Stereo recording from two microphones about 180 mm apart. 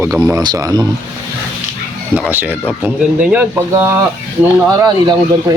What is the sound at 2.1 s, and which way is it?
Speech, 10° right (ahead or behind).